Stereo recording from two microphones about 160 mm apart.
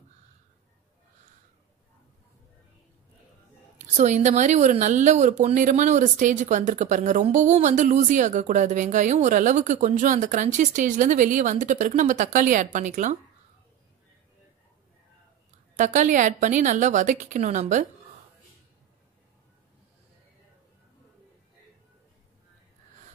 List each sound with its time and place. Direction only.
3.7 s a woman's voice: 45° right (ahead or behind)
15.7 s a woman's voice: 50° right (ahead or behind)